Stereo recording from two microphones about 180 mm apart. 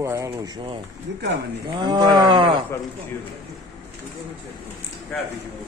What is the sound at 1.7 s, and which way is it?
Wild animals, 25° right (ahead or behind).